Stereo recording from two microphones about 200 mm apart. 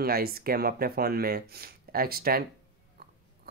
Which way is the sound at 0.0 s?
50° right (ahead or behind).